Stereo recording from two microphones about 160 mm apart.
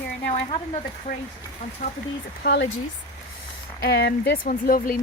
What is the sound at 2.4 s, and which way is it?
Speech, 90° left.